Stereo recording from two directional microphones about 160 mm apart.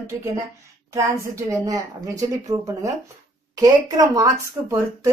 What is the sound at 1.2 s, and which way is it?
Speech, 20° right (ahead or behind).